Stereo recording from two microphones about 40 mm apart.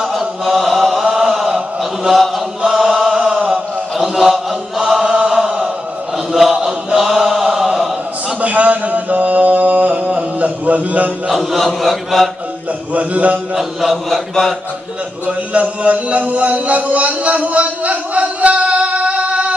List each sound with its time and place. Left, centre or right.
0.0 s chant: centre
6.1 s a sound: centre
7.0 s chant: centre
8.4 s mantra: right
11.2 s chant: centre
12.9 s a man's voice: right
13.6 s chant: centre
15.2 s a sound: right